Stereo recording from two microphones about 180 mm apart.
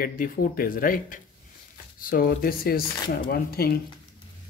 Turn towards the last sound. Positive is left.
turn(degrees=60)  # may be behind; listen again after turning